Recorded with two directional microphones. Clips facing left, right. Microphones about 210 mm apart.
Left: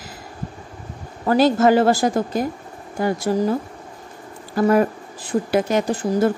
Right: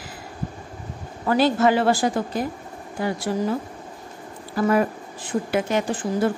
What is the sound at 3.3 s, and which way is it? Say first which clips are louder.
Speech: left 5 dB; 40° left (ahead or behind).